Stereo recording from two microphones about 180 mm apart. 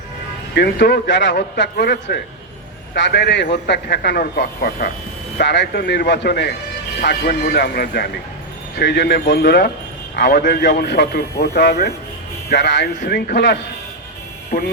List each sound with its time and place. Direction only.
0.5 s a man's voice: 65° left (ahead or behind)
12.5 s a man's voice: 75° left (ahead or behind)
14.5 s speech: 50° left (ahead or behind)